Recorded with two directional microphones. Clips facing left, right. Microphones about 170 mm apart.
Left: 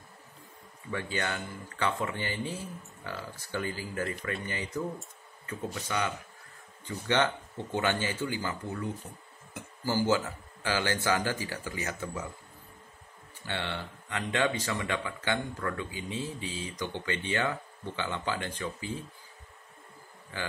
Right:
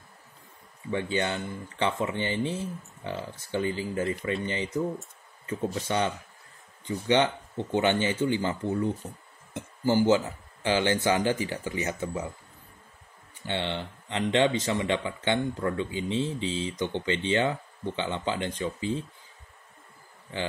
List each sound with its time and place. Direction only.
0.9 s speech: 20° right (ahead or behind)
6.8 s speech: 15° right (ahead or behind)
13.5 s speech: 20° right (ahead or behind)